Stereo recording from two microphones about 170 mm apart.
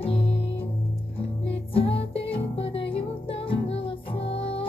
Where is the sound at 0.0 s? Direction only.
35° left (ahead or behind).